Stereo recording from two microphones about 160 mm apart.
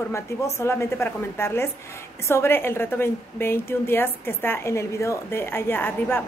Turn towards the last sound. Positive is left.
turn(degrees=15)  # may be behind; listen again after turning